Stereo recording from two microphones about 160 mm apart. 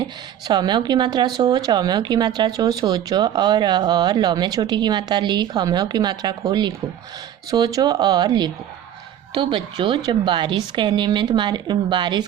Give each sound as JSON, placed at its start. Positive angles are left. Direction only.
{"t": 0.4, "sound": "speech", "side_deg": -25}